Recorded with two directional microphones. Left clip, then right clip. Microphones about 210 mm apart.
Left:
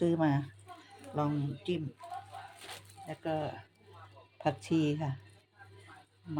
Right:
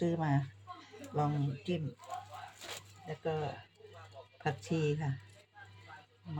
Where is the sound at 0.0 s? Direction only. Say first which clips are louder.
Left 4 dB; 45° left (ahead or behind).